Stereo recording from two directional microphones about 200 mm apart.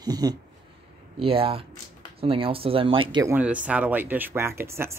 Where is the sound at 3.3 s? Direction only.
5° right (ahead or behind).